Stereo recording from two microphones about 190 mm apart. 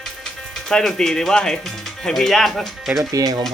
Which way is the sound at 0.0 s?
Centre (ahead or behind).